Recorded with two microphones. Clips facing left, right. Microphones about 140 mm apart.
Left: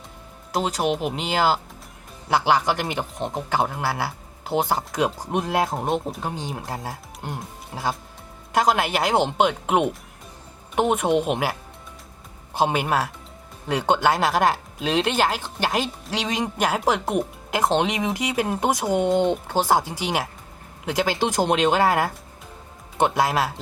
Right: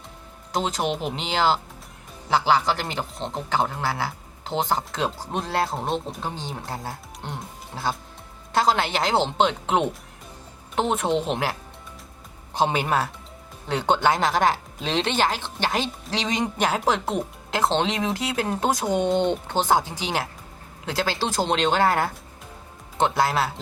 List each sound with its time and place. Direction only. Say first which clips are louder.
0.5 s speech: left 2 dB; 5° left (ahead or behind)
12.5 s speech: left 1 dB; 5° left (ahead or behind)